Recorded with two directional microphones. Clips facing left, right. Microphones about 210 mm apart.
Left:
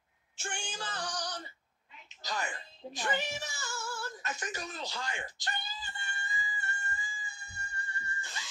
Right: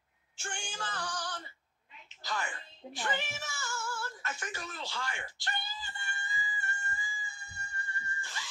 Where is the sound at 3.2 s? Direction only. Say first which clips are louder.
Left 3 dB; 20° left (ahead or behind).